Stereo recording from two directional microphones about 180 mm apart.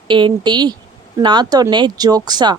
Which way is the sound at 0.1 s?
25° right (ahead or behind).